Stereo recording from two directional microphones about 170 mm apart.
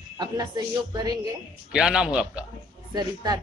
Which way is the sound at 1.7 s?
5° right (ahead or behind).